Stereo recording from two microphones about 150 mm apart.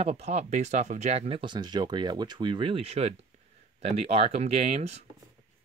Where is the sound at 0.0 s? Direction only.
45° right (ahead or behind).